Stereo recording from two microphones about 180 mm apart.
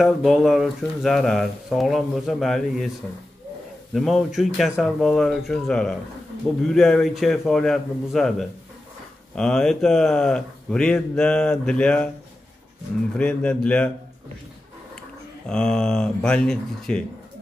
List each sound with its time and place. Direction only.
0.0 s speech: centre (ahead or behind)
3.9 s speech: centre (ahead or behind)
13.1 s speech: 5° left (ahead or behind)
15.4 s speech: 5° left (ahead or behind)